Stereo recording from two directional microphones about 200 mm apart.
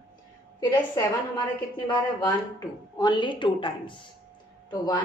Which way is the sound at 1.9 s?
20° left (ahead or behind).